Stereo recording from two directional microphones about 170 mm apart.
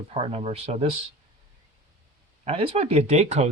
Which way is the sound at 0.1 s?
35° right (ahead or behind).